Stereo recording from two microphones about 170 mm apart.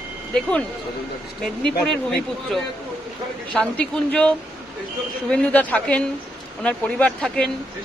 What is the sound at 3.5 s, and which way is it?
A man's voice, 5° left (ahead or behind).